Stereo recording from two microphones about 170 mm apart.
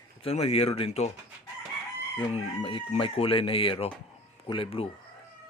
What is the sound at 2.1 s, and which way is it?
Chicken, 30° left (ahead or behind).